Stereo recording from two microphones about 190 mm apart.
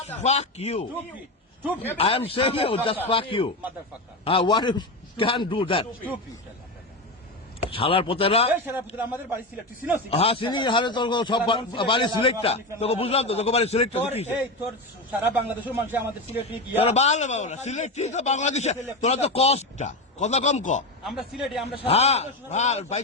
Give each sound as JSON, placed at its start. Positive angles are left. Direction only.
{"t": 0.2, "sound": "a man's voice", "side_deg": 35}
{"t": 2.0, "sound": "a man's voice", "side_deg": 30}
{"t": 7.6, "sound": "a man's voice", "side_deg": 30}
{"t": 8.5, "sound": "a man's voice", "side_deg": -10}
{"t": 10.1, "sound": "a man's voice", "side_deg": 30}
{"t": 15.2, "sound": "a man's voice", "side_deg": -10}
{"t": 16.7, "sound": "a man's voice", "side_deg": 35}
{"t": 21.0, "sound": "a man's voice", "side_deg": 0}
{"t": 21.8, "sound": "a man's voice", "side_deg": 35}